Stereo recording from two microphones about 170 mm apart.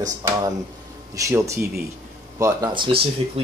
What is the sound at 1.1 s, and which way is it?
Speech, 20° right (ahead or behind).